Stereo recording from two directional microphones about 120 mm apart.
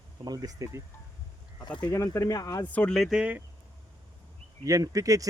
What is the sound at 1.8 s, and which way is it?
Speech, 20° left (ahead or behind).